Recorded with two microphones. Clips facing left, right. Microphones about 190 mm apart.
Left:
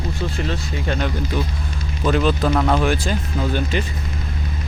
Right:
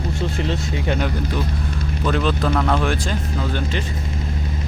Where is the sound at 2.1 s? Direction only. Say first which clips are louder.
Left 3 dB; 5° left (ahead or behind).